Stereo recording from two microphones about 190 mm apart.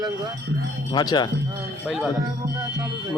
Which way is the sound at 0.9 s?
25° left (ahead or behind).